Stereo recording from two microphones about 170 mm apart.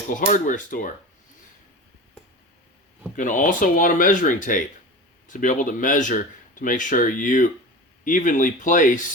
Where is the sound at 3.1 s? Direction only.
50° left (ahead or behind).